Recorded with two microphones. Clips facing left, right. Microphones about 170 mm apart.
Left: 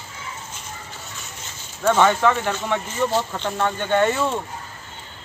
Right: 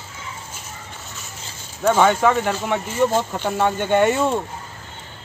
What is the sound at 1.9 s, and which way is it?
Speech, 10° right (ahead or behind).